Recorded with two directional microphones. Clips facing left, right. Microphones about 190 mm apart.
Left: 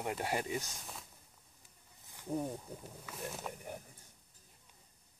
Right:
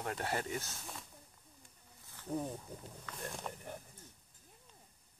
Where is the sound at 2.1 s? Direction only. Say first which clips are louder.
Left 1 dB; 15° left (ahead or behind).